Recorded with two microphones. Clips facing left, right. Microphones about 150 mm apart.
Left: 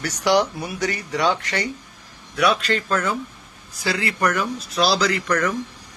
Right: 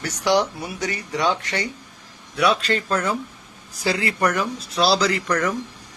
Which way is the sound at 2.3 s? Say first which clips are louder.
Even; 30° right (ahead or behind).